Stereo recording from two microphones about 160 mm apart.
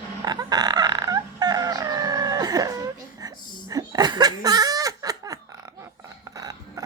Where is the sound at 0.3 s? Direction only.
25° right (ahead or behind).